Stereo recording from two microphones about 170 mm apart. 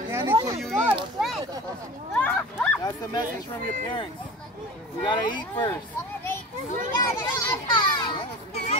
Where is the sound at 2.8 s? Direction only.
20° left (ahead or behind).